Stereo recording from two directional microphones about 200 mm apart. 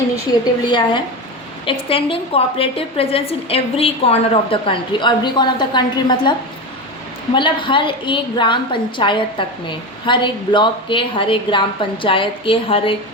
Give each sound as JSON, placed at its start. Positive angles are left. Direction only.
{"t": 0.6, "sound": "a woman's voice", "side_deg": 20}
{"t": 7.3, "sound": "a woman's voice", "side_deg": 25}